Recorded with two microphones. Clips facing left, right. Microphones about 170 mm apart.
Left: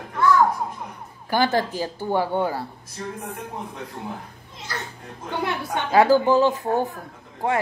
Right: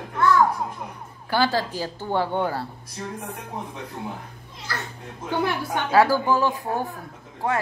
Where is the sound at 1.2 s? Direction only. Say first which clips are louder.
Left 1 dB; 20° left (ahead or behind).